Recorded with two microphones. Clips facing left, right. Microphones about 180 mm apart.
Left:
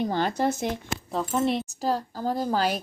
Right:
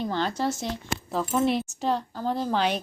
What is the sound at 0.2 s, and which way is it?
Speech, 55° left (ahead or behind).